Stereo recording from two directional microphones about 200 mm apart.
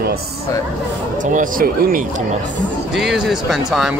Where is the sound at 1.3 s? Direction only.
45° right (ahead or behind).